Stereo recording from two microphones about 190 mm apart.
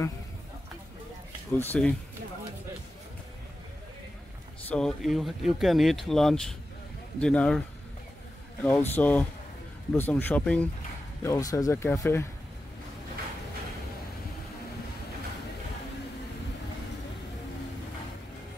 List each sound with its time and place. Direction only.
1.6 s speech: 10° left (ahead or behind)
4.6 s speech: 5° left (ahead or behind)
8.6 s speech: 10° left (ahead or behind)